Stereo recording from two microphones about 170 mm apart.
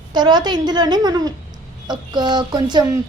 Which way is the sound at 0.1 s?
25° right (ahead or behind).